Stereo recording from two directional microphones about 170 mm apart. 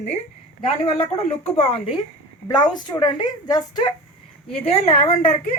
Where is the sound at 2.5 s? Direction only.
25° left (ahead or behind).